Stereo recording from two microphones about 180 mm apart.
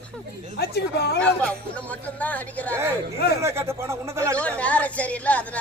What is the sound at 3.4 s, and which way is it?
Speech, 15° right (ahead or behind).